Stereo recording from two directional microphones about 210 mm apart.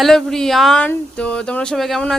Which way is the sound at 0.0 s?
Centre (ahead or behind).